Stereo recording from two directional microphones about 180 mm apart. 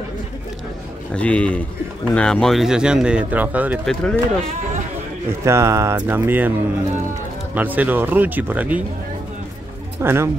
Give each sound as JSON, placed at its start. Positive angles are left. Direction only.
{"t": 1.1, "sound": "speech", "side_deg": 5}
{"t": 3.8, "sound": "speech", "side_deg": 5}
{"t": 5.4, "sound": "speech", "side_deg": -15}
{"t": 7.5, "sound": "speech", "side_deg": -10}
{"t": 9.9, "sound": "speech", "side_deg": -15}